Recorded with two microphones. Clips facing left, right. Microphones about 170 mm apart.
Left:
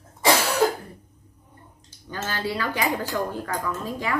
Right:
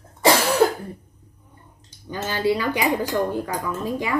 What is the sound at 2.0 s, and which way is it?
A woman's voice, 15° right (ahead or behind).